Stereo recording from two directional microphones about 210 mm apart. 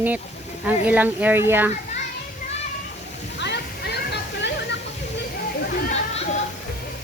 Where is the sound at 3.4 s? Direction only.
55° left (ahead or behind).